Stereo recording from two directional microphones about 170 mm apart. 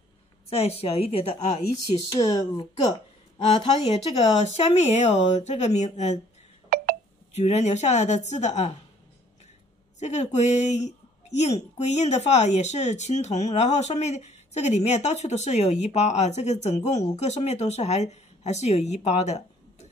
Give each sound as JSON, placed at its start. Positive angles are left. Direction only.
{"t": 0.5, "sound": "speech", "side_deg": 35}
{"t": 2.1, "sound": "speech", "side_deg": 30}
{"t": 7.3, "sound": "speech", "side_deg": 40}
{"t": 9.9, "sound": "speech", "side_deg": 40}